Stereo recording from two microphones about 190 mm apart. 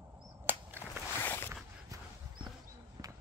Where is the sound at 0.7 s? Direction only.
10° left (ahead or behind).